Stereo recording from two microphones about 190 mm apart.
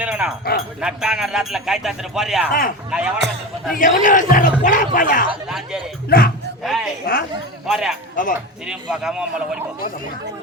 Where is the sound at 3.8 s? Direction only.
45° left (ahead or behind).